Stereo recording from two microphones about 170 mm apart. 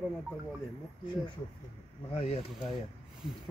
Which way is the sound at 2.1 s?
35° left (ahead or behind).